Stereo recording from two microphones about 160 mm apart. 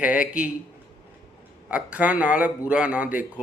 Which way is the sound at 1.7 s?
10° right (ahead or behind).